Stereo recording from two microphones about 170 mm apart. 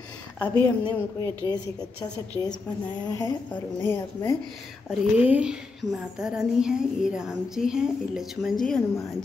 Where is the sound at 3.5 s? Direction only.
15° left (ahead or behind).